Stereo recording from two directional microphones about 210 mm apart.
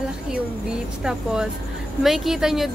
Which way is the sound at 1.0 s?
5° right (ahead or behind).